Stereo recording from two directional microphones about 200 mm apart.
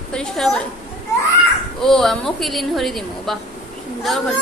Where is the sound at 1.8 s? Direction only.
Centre (ahead or behind).